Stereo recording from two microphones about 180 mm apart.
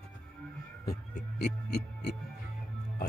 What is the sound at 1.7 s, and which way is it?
Music, 70° left (ahead or behind).